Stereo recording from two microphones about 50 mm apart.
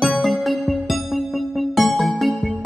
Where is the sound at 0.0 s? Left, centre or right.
Centre.